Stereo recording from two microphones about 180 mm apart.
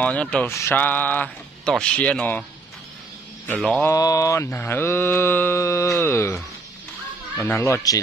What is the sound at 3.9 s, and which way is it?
Mantra, 20° left (ahead or behind).